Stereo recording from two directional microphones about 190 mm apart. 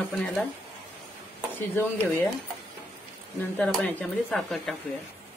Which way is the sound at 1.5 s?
10° left (ahead or behind).